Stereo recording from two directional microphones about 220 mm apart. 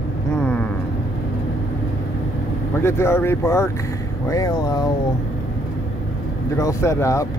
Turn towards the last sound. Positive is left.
turn(degrees=15)  # may be behind; listen again after turning